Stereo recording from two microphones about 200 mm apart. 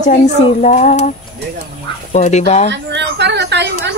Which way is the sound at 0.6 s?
35° left (ahead or behind).